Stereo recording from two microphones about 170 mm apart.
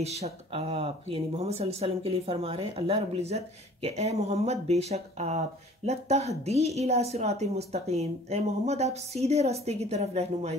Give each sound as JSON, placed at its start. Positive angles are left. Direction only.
{"t": 0.0, "sound": "a woman's voice", "side_deg": -40}